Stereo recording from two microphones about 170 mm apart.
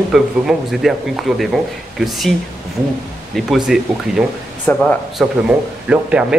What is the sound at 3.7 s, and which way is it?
Speech, 5° right (ahead or behind).